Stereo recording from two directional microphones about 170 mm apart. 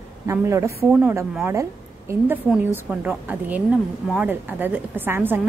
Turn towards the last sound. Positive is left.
turn(degrees=-10)  # may be behind; listen again after turning